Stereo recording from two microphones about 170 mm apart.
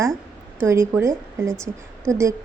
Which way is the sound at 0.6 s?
15° right (ahead or behind).